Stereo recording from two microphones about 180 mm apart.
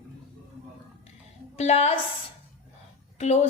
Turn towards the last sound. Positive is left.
turn(degrees=35)  # may be behind; listen again after turning